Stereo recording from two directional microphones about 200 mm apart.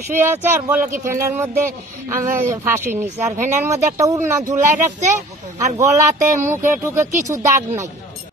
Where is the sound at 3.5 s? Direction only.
35° right (ahead or behind).